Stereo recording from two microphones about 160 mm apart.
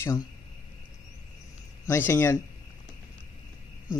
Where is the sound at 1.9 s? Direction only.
15° left (ahead or behind).